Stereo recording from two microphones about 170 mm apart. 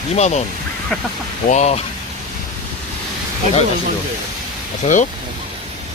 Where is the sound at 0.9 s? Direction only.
5° left (ahead or behind).